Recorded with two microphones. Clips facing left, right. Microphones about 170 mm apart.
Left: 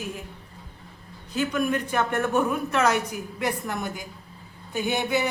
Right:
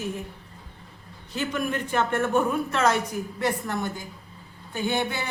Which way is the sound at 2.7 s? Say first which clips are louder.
Left 1 dB; 15° left (ahead or behind).